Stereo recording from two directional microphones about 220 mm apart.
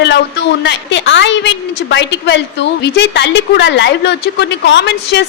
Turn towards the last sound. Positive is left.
turn(degrees=50)  # may be behind; listen again after turning